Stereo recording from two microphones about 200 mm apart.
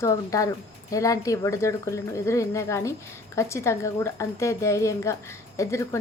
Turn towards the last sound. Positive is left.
turn(degrees=15)  # may be behind; listen again after turning